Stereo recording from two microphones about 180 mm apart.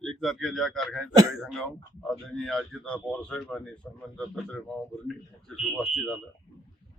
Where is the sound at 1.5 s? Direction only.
5° left (ahead or behind).